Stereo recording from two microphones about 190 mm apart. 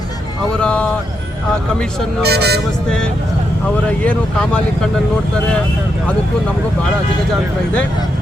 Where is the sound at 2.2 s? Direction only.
60° right (ahead or behind).